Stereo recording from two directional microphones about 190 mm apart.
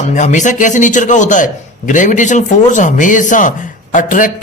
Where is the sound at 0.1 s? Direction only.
40° left (ahead or behind).